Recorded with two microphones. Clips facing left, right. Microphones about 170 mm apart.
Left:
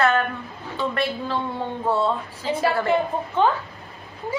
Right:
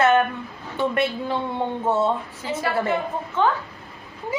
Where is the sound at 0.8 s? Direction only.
20° right (ahead or behind).